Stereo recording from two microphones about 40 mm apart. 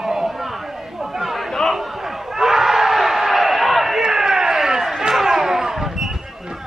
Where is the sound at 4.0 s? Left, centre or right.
Centre.